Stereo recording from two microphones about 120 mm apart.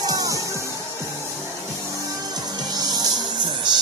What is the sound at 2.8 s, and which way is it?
Music, 35° right (ahead or behind).